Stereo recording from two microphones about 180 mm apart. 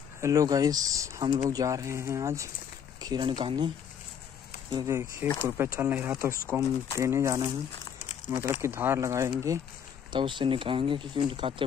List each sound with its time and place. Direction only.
0.2 s speech: 20° right (ahead or behind)